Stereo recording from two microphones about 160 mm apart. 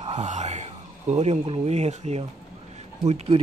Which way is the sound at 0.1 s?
45° right (ahead or behind).